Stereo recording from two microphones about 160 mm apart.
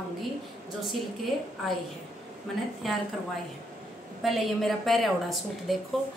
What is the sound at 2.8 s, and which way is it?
Speech, centre (ahead or behind).